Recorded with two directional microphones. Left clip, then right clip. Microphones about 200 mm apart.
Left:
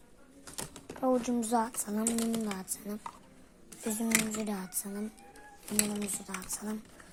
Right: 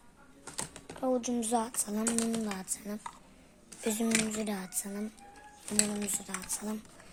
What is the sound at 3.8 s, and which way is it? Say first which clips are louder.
Speech: right 3 dB; 25° right (ahead or behind).